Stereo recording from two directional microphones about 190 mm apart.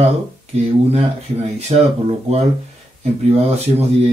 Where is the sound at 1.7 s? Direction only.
35° right (ahead or behind).